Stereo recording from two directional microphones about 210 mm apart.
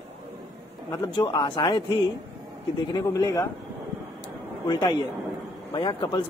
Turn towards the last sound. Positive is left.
turn(degrees=20)  # may be behind; listen again after turning